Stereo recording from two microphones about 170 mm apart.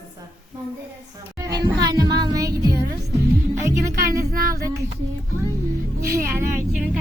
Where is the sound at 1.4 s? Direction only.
25° right (ahead or behind).